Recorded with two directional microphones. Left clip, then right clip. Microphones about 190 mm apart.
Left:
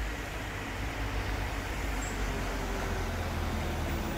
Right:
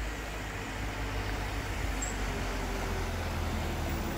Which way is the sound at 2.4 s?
20° right (ahead or behind).